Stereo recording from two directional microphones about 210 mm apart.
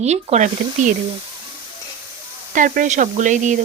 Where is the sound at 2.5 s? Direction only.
40° right (ahead or behind).